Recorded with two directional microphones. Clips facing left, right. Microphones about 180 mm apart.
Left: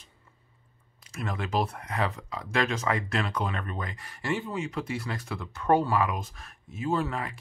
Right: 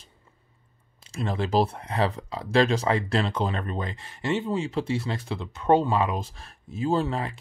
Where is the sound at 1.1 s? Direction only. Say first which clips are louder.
Right 5 dB; 30° right (ahead or behind).